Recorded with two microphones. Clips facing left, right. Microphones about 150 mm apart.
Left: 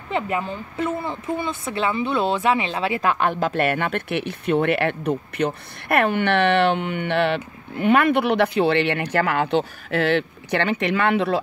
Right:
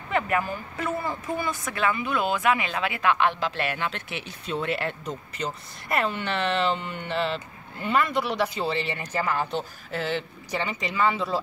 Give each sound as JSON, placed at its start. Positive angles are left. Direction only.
{"t": 0.1, "sound": "speech", "side_deg": 25}